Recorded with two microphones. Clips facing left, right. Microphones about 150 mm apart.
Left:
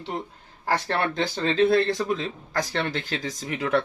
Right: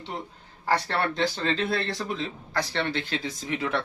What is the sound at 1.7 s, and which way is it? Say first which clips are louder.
Speech: left 7 dB; 45° left (ahead or behind).